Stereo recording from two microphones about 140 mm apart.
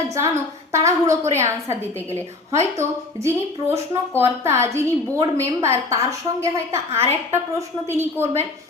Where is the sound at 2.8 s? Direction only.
20° right (ahead or behind).